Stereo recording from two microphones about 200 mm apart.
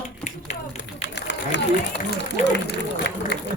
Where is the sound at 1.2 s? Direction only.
60° left (ahead or behind).